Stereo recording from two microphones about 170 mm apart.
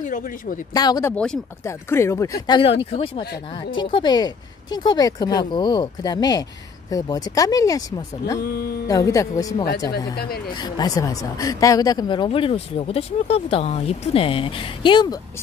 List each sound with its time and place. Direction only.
0.0 s speech: 50° left (ahead or behind)
0.7 s speech: 25° left (ahead or behind)
1.1 s speech: 5° left (ahead or behind)
1.6 s speech: 15° left (ahead or behind)
10.1 s speech: 65° left (ahead or behind)
10.5 s speech: 25° left (ahead or behind)